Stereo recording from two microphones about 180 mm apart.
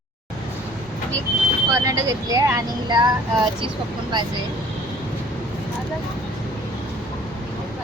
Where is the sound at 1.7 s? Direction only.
15° right (ahead or behind).